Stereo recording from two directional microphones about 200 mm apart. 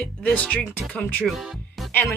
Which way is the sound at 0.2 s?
5° left (ahead or behind).